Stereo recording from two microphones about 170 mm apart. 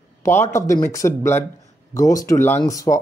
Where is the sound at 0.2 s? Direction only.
15° left (ahead or behind).